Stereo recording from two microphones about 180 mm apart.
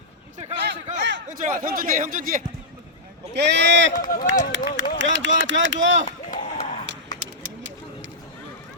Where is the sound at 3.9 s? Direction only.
50° left (ahead or behind).